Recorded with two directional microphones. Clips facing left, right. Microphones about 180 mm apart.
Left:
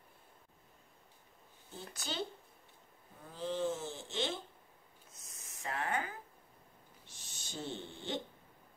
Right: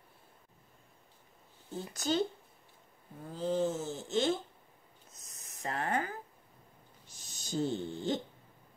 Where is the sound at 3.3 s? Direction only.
40° right (ahead or behind).